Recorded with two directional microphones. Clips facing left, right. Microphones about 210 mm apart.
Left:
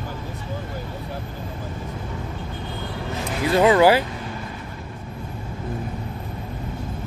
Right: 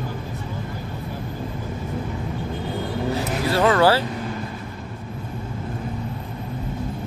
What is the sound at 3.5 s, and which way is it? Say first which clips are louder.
Music: left 3 dB; 15° left (ahead or behind).